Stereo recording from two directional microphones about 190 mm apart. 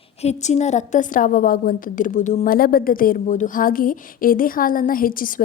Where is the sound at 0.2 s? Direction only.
35° left (ahead or behind).